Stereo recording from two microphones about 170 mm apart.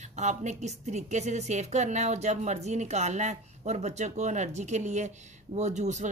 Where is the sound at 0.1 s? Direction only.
45° right (ahead or behind).